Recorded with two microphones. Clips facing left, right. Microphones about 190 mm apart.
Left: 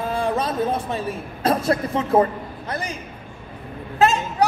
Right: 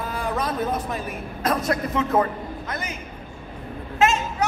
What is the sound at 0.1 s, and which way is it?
A man's voice, 25° left (ahead or behind).